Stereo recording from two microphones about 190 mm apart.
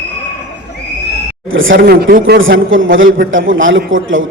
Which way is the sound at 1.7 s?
55° right (ahead or behind).